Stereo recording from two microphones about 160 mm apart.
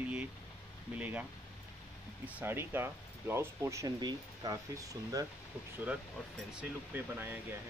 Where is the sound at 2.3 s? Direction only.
15° right (ahead or behind).